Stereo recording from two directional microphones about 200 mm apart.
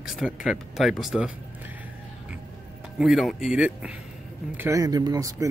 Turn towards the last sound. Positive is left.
turn(degrees=-15)  # may be behind; listen again after turning